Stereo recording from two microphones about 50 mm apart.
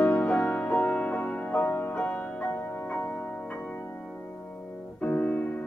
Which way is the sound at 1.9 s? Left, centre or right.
Left.